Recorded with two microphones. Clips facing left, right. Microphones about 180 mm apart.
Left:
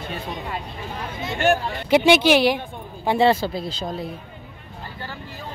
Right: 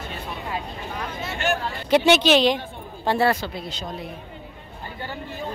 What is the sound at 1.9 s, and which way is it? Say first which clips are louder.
Speech: left 1 dB; 15° left (ahead or behind).